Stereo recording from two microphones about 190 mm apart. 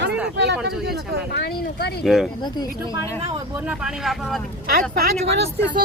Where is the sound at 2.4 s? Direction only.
20° left (ahead or behind).